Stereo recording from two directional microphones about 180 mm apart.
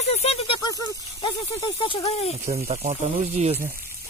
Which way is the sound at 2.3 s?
35° right (ahead or behind).